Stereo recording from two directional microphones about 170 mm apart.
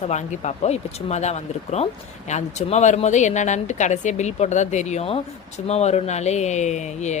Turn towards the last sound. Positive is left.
turn(degrees=45)  # may be behind; listen again after turning